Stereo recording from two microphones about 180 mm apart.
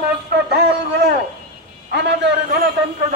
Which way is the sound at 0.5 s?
65° right (ahead or behind).